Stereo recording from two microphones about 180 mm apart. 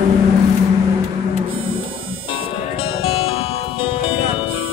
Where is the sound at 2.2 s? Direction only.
30° left (ahead or behind).